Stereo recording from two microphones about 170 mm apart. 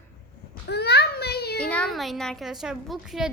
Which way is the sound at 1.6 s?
5° left (ahead or behind).